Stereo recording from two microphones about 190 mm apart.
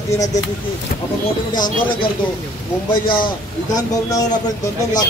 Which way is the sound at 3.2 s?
20° left (ahead or behind).